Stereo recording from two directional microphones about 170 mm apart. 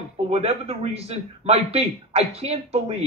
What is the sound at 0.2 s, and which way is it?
A man's voice, 35° right (ahead or behind).